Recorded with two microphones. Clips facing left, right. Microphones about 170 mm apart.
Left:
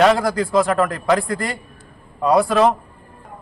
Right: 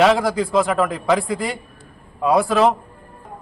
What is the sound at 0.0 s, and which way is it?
A man's voice, centre (ahead or behind).